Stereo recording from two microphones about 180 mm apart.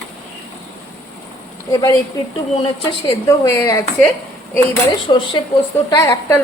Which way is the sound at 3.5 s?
15° left (ahead or behind).